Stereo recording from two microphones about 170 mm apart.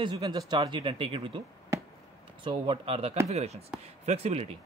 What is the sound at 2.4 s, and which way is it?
A man's voice, 30° right (ahead or behind).